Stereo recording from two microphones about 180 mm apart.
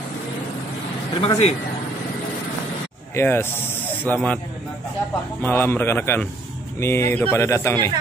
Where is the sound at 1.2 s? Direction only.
30° left (ahead or behind).